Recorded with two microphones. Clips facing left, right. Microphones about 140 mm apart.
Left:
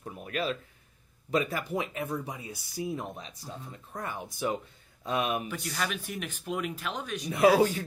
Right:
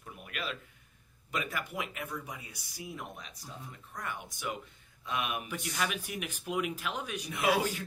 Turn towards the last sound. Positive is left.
turn(degrees=35)  # may be behind; listen again after turning